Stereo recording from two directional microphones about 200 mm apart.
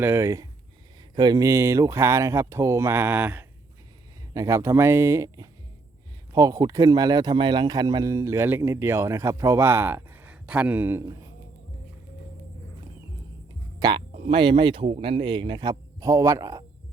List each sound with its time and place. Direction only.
0.0 s a man's voice: 10° right (ahead or behind)
13.7 s speech: 20° right (ahead or behind)